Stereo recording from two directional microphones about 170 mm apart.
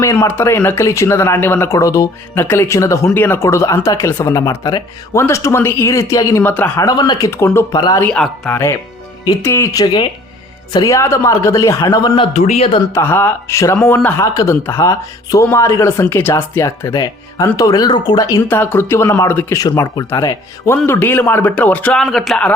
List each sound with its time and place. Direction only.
0.0 s speech: 15° left (ahead or behind)
6.8 s a man's voice: 25° left (ahead or behind)
8.0 s a man's voice: 5° left (ahead or behind); by 12.8 s 35° left (ahead or behind)
12.9 s speech: 15° left (ahead or behind)